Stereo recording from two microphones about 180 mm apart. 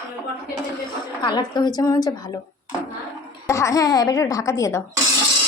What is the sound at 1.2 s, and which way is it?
A woman's voice, 25° left (ahead or behind).